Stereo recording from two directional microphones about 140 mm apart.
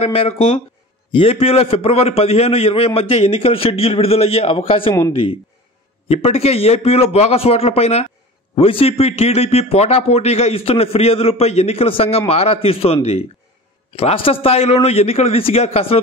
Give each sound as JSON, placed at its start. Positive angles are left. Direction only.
{"t": 0.0, "sound": "speech", "side_deg": 45}